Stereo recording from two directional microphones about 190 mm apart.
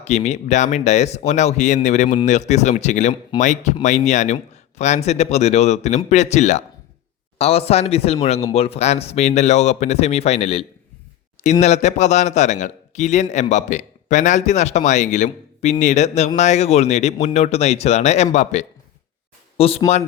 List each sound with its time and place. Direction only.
0.0 s a man's voice: 35° left (ahead or behind)